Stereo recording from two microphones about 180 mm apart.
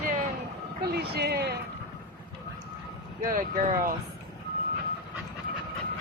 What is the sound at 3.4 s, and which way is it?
Speech, 50° right (ahead or behind).